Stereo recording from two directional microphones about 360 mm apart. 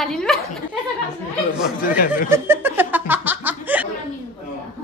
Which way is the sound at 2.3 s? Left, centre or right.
Centre.